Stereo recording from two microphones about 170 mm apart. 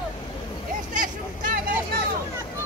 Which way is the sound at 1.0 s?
50° right (ahead or behind).